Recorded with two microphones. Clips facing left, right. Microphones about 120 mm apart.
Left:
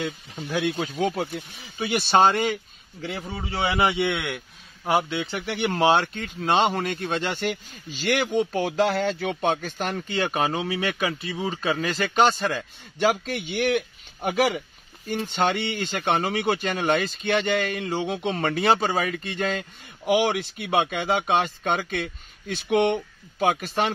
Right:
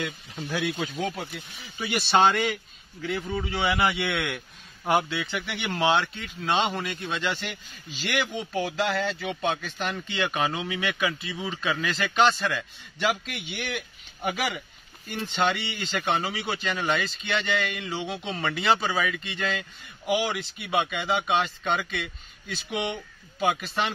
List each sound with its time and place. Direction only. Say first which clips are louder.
0.4 s speech: left 3 dB; 30° left (ahead or behind)
1.1 s a man's voice: left 7 dB; 45° left (ahead or behind); by 4.4 s 15° left (ahead or behind)
5.3 s a man's voice: left 5 dB; 40° left (ahead or behind)
20.1 s speech: left 5 dB; 55° left (ahead or behind)
23.4 s speech: left 3 dB; 45° left (ahead or behind)